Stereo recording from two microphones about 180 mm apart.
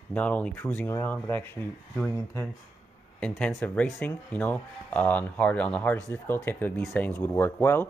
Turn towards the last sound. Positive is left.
turn(degrees=15)  # may be behind; listen again after turning